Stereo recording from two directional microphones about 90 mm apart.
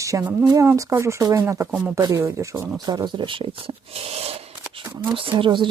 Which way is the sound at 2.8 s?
50° right (ahead or behind).